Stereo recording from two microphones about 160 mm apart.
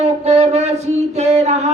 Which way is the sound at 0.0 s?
40° right (ahead or behind).